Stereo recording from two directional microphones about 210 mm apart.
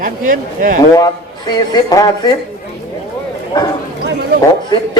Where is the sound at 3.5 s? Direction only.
20° left (ahead or behind).